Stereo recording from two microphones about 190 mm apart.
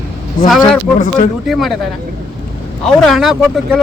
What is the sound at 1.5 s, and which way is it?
Speech, centre (ahead or behind).